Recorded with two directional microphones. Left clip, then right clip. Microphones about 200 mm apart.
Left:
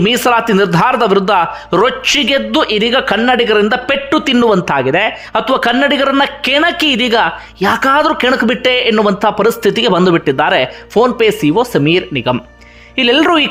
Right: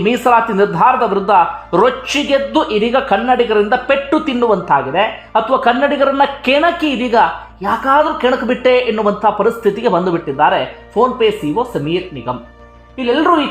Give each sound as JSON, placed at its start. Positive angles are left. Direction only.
{"t": 0.0, "sound": "speech", "side_deg": 25}
{"t": 2.7, "sound": "speech", "side_deg": 20}